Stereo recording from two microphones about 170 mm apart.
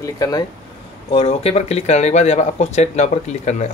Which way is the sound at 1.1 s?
35° left (ahead or behind).